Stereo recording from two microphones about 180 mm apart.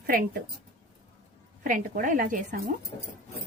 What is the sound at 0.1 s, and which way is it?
Speech, 55° right (ahead or behind).